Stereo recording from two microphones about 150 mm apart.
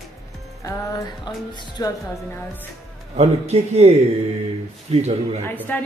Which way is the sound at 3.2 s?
45° right (ahead or behind).